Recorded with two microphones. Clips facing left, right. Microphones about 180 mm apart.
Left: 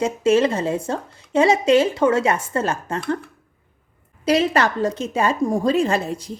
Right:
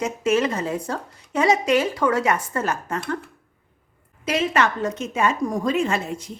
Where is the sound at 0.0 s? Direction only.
30° left (ahead or behind).